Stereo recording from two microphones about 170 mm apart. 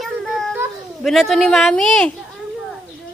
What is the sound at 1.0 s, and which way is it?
A child's voice, centre (ahead or behind).